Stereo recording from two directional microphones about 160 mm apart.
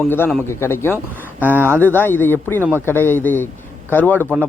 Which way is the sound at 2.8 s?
15° left (ahead or behind).